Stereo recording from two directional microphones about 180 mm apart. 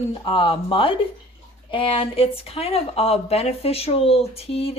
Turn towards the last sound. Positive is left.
turn(degrees=35)  # may be behind; listen again after turning